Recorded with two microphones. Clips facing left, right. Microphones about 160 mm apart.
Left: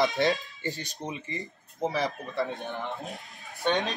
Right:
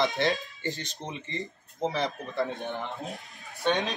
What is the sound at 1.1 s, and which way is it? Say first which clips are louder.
Speech: right 1 dB; 5° left (ahead or behind).